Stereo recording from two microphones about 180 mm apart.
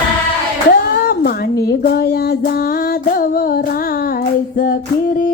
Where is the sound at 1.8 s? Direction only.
60° left (ahead or behind).